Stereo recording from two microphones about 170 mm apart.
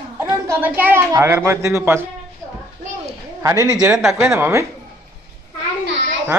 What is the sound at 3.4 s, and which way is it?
Speech, 20° right (ahead or behind).